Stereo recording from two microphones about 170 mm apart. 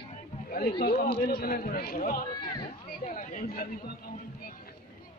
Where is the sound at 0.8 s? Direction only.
65° left (ahead or behind).